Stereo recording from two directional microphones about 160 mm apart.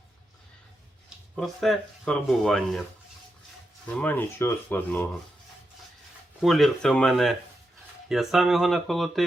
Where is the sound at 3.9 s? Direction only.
10° left (ahead or behind).